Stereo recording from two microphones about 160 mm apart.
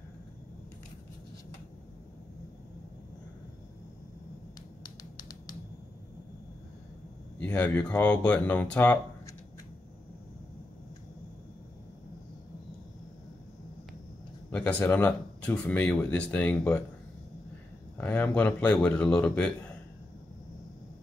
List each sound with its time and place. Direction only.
4.8 s a sound: 25° left (ahead or behind)
7.3 s speech: 10° left (ahead or behind)
14.5 s speech: 10° left (ahead or behind)
17.9 s speech: 10° left (ahead or behind)